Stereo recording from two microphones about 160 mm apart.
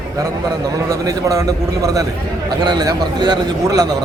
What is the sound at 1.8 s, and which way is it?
A man's voice, 20° right (ahead or behind).